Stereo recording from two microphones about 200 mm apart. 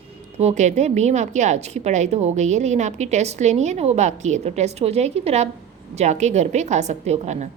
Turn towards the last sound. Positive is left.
turn(degrees=-35)  # may be behind; listen again after turning